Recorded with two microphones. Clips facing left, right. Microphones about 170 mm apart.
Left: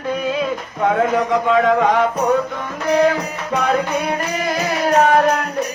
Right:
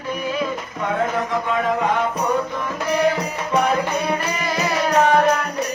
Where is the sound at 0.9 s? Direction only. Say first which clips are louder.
Left 5 dB; 80° left.